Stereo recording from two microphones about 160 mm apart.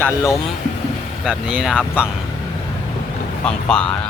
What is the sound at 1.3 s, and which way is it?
Speech, 5° right (ahead or behind).